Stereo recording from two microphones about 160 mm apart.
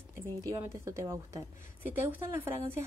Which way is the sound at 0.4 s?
20° right (ahead or behind).